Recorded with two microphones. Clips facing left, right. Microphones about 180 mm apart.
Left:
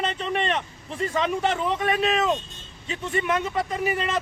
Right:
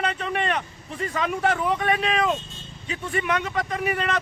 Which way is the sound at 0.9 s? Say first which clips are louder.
Left 2 dB; 25° left (ahead or behind).